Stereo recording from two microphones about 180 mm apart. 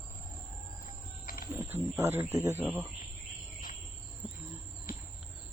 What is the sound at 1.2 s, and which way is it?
Wild animals, 55° left (ahead or behind).